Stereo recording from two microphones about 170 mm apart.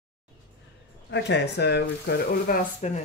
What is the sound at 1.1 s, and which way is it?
Speech, 90° left.